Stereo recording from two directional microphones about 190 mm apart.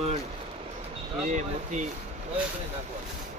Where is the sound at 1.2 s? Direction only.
40° right (ahead or behind).